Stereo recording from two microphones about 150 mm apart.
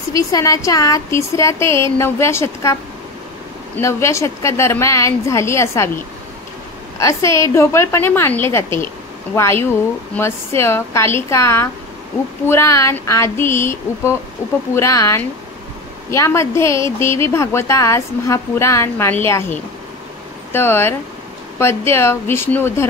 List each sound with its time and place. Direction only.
0.1 s speech: 20° left (ahead or behind)
7.0 s speech: 20° left (ahead or behind)